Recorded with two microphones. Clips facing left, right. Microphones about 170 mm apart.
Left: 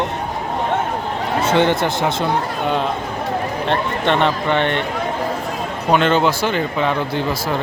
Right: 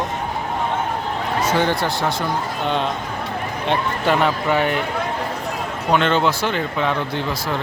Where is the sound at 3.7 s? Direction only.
5° right (ahead or behind).